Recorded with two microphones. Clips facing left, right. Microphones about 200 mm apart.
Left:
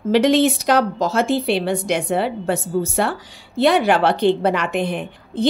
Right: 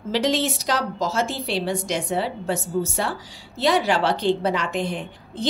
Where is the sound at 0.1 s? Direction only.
60° left (ahead or behind).